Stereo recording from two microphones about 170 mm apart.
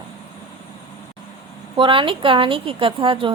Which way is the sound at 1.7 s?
30° right (ahead or behind).